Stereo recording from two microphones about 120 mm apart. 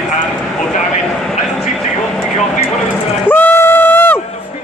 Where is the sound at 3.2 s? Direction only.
15° left (ahead or behind).